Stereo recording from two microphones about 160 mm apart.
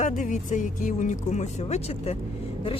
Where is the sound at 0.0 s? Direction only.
50° left (ahead or behind).